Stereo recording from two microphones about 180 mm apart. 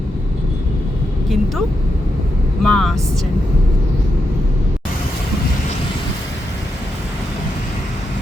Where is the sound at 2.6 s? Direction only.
Centre (ahead or behind).